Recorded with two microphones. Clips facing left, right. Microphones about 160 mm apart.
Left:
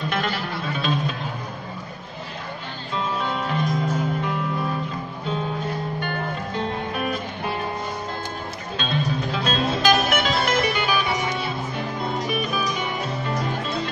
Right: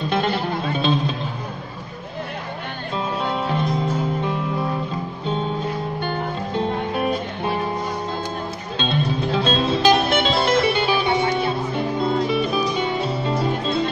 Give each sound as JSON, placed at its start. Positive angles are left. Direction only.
{"t": 0.1, "sound": "music", "side_deg": -25}
{"t": 3.3, "sound": "music", "side_deg": -30}
{"t": 8.7, "sound": "music", "side_deg": -30}